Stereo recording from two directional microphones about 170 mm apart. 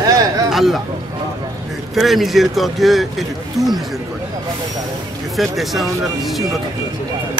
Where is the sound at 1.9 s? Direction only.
Centre (ahead or behind).